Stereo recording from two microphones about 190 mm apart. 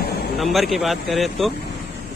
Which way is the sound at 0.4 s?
Centre (ahead or behind).